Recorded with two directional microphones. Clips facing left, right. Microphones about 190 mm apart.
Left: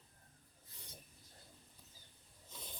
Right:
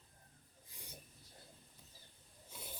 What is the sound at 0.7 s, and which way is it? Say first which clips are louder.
Rub: right 2 dB; 10° right (ahead or behind).